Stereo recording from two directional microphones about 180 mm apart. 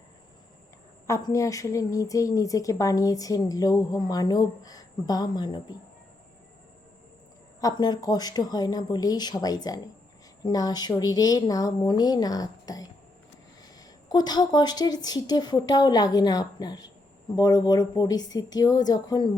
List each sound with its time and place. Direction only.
1.0 s speech: 15° left (ahead or behind)
7.6 s speech: 20° left (ahead or behind)